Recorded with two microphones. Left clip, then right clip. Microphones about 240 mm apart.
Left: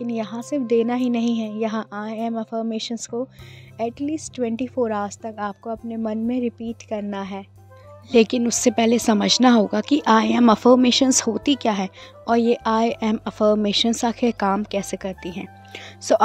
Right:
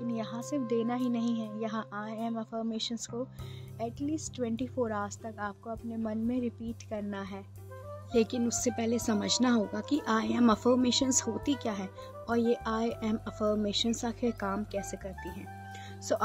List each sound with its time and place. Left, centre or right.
0.0 s a woman's voice: left
15.7 s music: left